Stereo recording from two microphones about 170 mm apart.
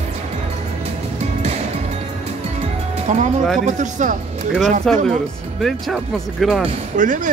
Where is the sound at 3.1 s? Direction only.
45° right (ahead or behind).